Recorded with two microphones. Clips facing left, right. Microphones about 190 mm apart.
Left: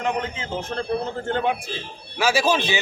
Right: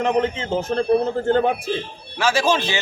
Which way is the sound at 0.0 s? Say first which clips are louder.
Right 6 dB; 30° right (ahead or behind).